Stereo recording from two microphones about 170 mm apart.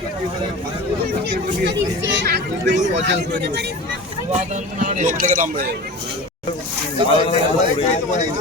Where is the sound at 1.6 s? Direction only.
85° right.